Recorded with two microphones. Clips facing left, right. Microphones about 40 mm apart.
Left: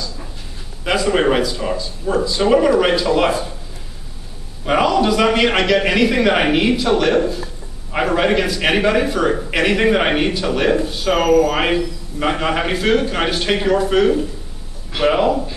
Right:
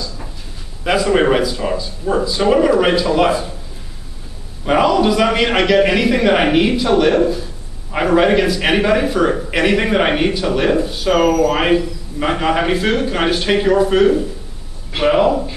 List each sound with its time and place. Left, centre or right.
0.8 s a man's voice: centre
4.6 s a man's voice: centre